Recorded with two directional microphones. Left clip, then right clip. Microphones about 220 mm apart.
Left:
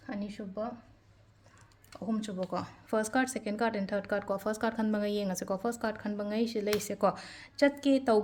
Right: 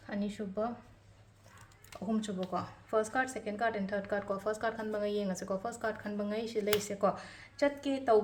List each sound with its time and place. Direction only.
0.1 s speech: 30° left (ahead or behind)
2.0 s a woman's voice: 35° left (ahead or behind)